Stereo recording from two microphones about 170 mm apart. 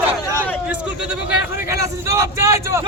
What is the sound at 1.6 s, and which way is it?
Speech, 15° right (ahead or behind).